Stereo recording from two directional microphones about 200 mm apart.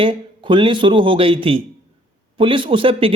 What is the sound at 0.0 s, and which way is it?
A man's voice, 25° right (ahead or behind).